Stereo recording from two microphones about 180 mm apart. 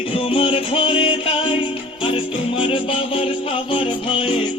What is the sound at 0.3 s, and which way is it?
Music, 30° left (ahead or behind).